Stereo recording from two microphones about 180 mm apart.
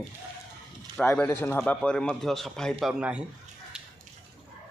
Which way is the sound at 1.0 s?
10° left (ahead or behind).